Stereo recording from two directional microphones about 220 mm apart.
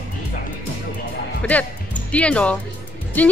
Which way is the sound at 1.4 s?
5° left (ahead or behind).